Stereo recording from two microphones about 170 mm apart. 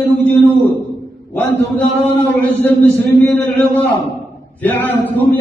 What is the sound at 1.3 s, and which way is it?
A man's voice, 10° left (ahead or behind).